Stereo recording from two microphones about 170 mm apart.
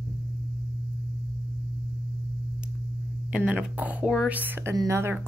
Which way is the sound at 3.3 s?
5° right (ahead or behind).